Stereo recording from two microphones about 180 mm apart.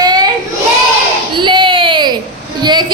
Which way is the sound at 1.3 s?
25° right (ahead or behind).